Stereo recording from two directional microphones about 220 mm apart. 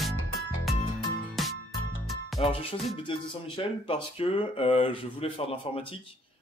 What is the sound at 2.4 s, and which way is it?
Speech, 25° left (ahead or behind).